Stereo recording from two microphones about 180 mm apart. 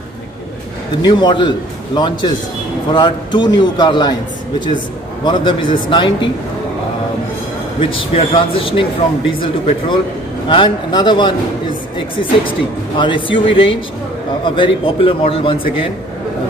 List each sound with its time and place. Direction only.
1.0 s speech: 25° left (ahead or behind)
5.2 s speech: 25° left (ahead or behind)
7.8 s speech: 30° left (ahead or behind)